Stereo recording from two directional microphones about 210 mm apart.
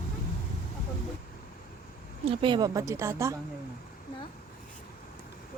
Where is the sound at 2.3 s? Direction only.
20° right (ahead or behind).